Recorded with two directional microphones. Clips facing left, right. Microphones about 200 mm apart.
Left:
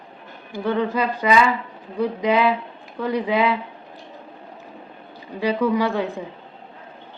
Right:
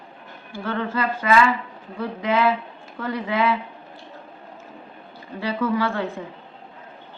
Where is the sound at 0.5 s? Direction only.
15° left (ahead or behind).